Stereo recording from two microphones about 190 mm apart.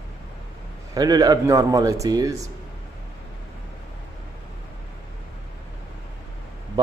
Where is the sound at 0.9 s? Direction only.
20° right (ahead or behind).